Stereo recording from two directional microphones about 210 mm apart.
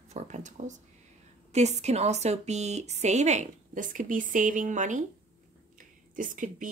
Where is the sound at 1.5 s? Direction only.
30° right (ahead or behind).